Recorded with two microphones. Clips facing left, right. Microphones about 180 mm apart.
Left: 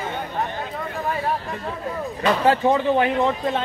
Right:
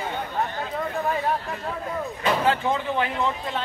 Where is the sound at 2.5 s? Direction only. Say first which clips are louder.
Left 6 dB; 35° left (ahead or behind).